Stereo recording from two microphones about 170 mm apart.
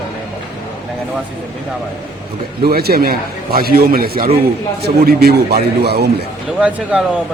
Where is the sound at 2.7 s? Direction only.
65° right (ahead or behind).